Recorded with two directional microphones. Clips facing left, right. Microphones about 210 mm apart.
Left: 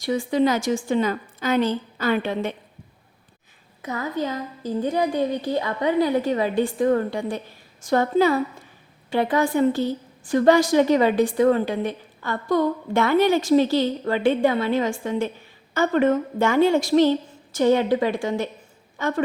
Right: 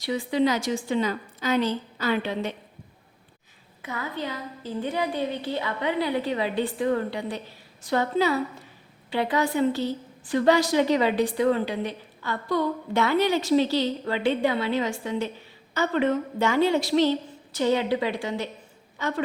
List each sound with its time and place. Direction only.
0.0 s a woman's voice: 45° left (ahead or behind)
3.8 s a woman's voice: 40° left (ahead or behind)